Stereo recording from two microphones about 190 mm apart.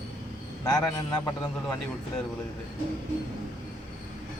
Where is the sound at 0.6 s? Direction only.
15° left (ahead or behind).